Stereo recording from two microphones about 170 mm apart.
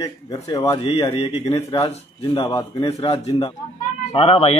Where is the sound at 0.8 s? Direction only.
30° left (ahead or behind).